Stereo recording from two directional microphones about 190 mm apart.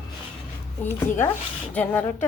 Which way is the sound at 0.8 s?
15° left (ahead or behind).